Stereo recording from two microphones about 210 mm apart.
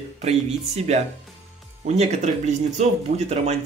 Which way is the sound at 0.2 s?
30° right (ahead or behind).